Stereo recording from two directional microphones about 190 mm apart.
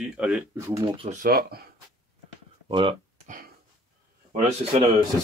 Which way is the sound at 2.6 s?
25° right (ahead or behind).